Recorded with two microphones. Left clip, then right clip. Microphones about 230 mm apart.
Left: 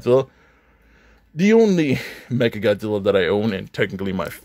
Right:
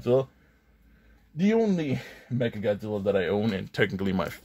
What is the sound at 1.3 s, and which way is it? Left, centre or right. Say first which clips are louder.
Speech: left 10 dB; left.